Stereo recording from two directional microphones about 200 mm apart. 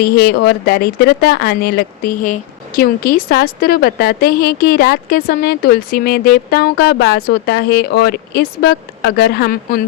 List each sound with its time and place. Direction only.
0.0 s speech: 55° left (ahead or behind)